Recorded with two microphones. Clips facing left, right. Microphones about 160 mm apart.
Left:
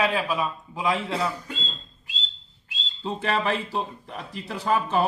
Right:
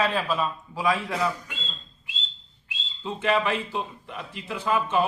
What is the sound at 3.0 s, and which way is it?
Speech, 35° left (ahead or behind).